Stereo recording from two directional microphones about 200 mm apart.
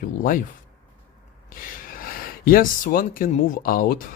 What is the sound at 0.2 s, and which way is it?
Speech, 45° left (ahead or behind).